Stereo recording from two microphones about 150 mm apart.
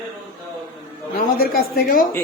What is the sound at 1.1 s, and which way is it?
Speech, 90° left.